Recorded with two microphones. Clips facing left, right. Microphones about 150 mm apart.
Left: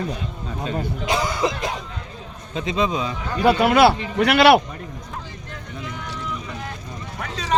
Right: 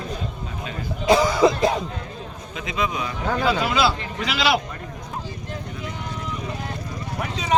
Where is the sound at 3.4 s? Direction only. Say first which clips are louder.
Left 8 dB; 60° left (ahead or behind).